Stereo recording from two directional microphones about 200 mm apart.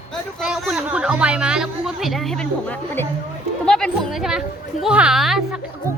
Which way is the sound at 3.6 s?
5° left (ahead or behind).